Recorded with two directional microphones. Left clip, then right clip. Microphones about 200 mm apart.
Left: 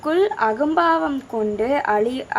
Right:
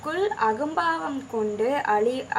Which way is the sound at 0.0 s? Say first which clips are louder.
Left 5 dB; 35° left (ahead or behind).